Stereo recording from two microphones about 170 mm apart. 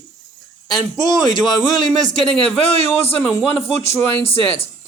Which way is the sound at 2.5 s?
35° left (ahead or behind).